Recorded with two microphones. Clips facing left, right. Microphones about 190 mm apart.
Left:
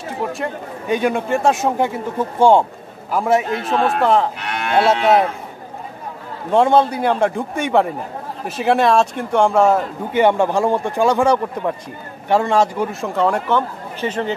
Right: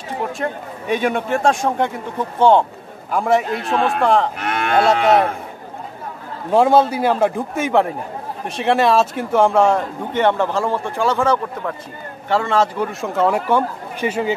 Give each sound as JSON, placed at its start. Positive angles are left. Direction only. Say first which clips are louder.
{"t": 0.4, "sound": "speech", "louder": "even", "side_deg": 0}
{"t": 4.4, "sound": "moo", "louder": "right 1 dB", "side_deg": -50}
{"t": 6.5, "sound": "speech", "louder": "even", "side_deg": -5}
{"t": 13.0, "sound": "speech", "louder": "right 1 dB", "side_deg": 0}